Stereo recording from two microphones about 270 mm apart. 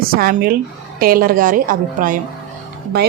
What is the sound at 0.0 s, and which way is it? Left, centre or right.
Speech, right.